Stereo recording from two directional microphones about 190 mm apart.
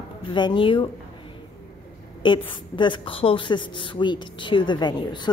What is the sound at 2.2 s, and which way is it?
A woman's voice, 25° left (ahead or behind).